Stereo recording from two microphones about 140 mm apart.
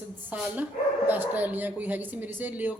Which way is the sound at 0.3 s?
10° right (ahead or behind).